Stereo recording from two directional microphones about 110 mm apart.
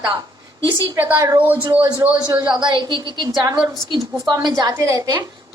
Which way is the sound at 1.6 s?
45° right (ahead or behind).